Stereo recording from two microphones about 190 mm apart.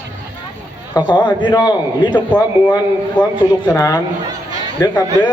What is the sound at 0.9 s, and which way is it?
A man's voice, 25° left (ahead or behind).